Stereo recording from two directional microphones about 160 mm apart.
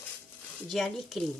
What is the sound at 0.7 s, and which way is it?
Speech, centre (ahead or behind).